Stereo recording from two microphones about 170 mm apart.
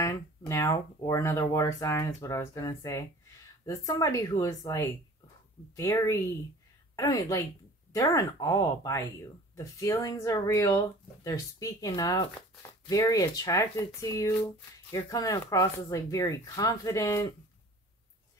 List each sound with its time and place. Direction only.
0.0 s speech: 15° left (ahead or behind)